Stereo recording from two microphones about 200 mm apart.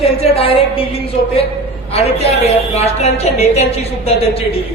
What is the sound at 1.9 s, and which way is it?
A woman's voice, 30° left (ahead or behind).